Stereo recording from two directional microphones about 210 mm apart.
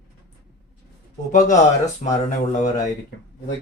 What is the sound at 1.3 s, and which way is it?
Speech, 35° left (ahead or behind).